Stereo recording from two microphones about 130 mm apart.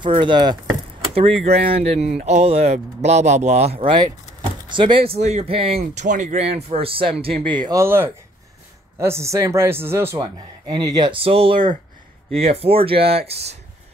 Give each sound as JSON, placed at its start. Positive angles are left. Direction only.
{"t": 0.2, "sound": "speech", "side_deg": -35}
{"t": 1.4, "sound": "speech", "side_deg": -50}
{"t": 6.0, "sound": "speech", "side_deg": -65}
{"t": 7.4, "sound": "speech", "side_deg": -35}
{"t": 7.8, "sound": "speech", "side_deg": -20}
{"t": 10.1, "sound": "speech", "side_deg": -35}